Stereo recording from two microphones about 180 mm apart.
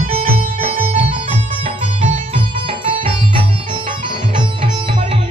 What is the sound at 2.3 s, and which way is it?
Music, 30° right (ahead or behind).